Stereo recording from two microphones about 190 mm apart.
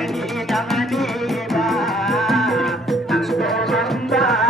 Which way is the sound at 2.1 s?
Centre (ahead or behind).